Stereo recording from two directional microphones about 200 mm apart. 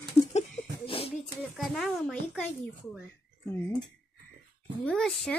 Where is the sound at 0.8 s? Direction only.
25° left (ahead or behind).